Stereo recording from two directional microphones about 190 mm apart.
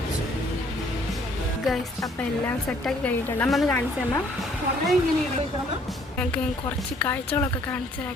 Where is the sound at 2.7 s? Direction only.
10° left (ahead or behind).